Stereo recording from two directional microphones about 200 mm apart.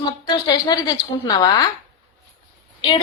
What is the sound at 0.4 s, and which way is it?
A woman's voice, 20° left (ahead or behind).